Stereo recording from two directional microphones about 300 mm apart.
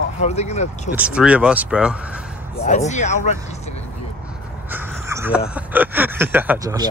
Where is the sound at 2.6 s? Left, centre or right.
Left.